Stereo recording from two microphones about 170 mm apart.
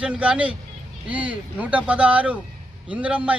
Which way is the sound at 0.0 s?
5° right (ahead or behind).